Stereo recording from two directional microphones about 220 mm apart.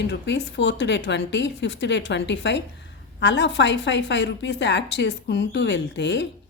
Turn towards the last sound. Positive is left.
turn(degrees=55)  # may be behind; listen again after turning